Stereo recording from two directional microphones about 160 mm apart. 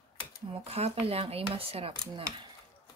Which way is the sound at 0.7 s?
40° right (ahead or behind).